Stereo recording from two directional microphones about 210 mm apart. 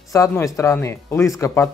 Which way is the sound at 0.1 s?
15° left (ahead or behind).